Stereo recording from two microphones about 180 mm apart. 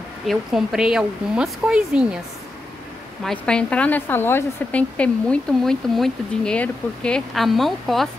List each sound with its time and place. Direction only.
0.3 s speech: centre (ahead or behind)
3.3 s speech: 5° left (ahead or behind)